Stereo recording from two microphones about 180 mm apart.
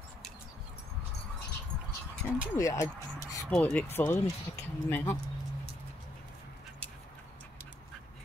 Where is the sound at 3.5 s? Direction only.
5° left (ahead or behind).